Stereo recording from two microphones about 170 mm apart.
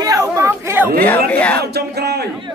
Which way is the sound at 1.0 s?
10° left (ahead or behind).